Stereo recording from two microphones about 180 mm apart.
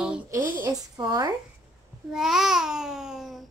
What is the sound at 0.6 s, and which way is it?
Speech, 20° right (ahead or behind).